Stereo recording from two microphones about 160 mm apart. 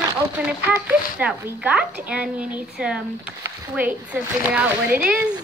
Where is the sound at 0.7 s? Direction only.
10° right (ahead or behind).